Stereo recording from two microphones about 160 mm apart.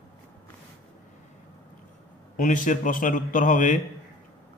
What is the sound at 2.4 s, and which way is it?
A man's voice, 55° left (ahead or behind).